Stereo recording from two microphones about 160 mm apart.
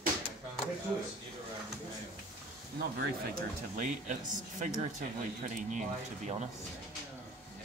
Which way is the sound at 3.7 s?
50° right (ahead or behind).